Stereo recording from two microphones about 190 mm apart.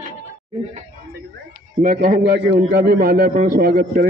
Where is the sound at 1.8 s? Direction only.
45° right (ahead or behind).